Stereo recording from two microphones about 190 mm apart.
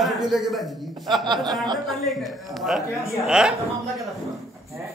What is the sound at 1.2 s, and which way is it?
Speech, 20° right (ahead or behind).